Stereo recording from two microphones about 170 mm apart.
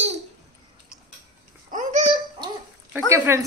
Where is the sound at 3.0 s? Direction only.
15° right (ahead or behind).